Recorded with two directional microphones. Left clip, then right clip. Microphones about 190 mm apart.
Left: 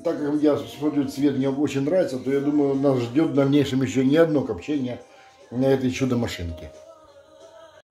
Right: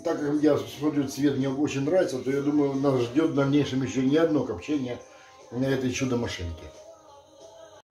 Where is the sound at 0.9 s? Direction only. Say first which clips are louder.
Left 4 dB; 35° left (ahead or behind).